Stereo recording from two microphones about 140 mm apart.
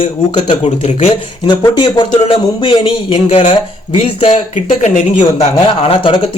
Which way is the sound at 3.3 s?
55° left (ahead or behind).